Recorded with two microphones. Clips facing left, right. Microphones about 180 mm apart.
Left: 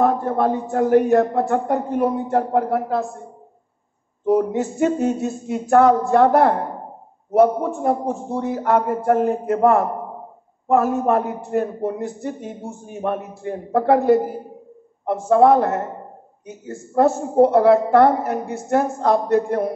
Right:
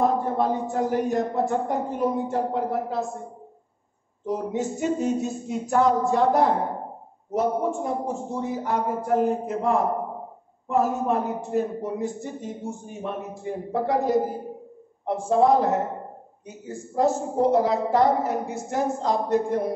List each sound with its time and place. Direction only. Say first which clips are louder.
0.0 s speech: left 4 dB; 60° left (ahead or behind)
4.3 s speech: left 8 dB; 65° left (ahead or behind)